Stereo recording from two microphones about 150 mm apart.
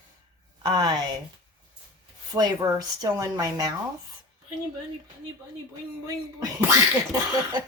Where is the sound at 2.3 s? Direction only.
25° right (ahead or behind).